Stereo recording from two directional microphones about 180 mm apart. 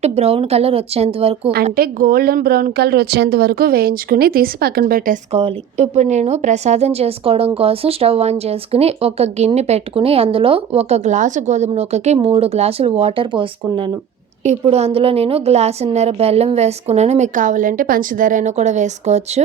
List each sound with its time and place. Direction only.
0.0 s a woman's voice: 35° right (ahead or behind)
1.7 s speech: 55° right (ahead or behind)
5.3 s a woman's voice: 40° right (ahead or behind)
14.4 s a woman's voice: 35° right (ahead or behind)